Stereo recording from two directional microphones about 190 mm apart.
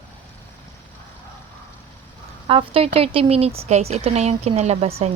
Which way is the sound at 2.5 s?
30° right (ahead or behind).